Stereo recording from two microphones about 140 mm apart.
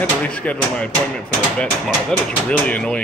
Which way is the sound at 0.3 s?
10° left (ahead or behind).